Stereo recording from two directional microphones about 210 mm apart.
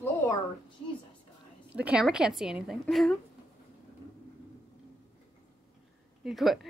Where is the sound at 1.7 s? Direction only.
5° right (ahead or behind).